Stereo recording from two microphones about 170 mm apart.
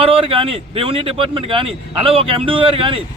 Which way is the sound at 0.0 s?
30° right (ahead or behind).